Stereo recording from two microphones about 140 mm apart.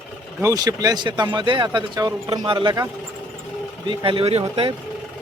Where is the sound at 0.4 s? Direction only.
25° right (ahead or behind).